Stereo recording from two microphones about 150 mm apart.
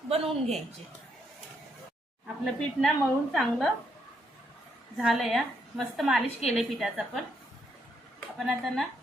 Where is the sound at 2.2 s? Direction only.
Centre (ahead or behind).